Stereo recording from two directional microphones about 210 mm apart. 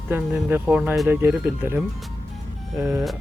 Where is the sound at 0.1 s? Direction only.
5° right (ahead or behind).